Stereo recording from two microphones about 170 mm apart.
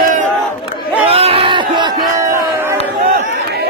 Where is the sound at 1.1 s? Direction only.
35° right (ahead or behind).